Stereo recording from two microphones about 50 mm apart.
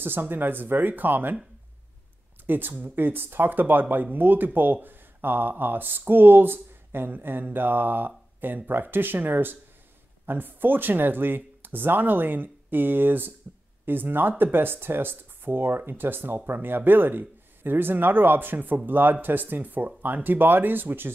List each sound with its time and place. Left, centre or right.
0.0 s speech: right
2.4 s speech: right